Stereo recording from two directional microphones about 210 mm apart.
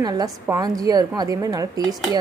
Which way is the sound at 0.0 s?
15° right (ahead or behind).